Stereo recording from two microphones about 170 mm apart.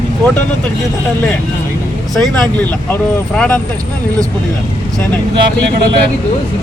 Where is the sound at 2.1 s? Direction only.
Centre (ahead or behind).